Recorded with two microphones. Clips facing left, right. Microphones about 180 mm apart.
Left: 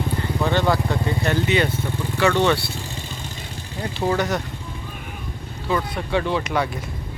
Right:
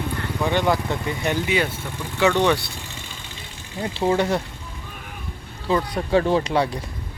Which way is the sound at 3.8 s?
25° right (ahead or behind).